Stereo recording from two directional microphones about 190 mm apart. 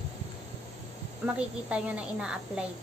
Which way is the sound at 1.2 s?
5° right (ahead or behind).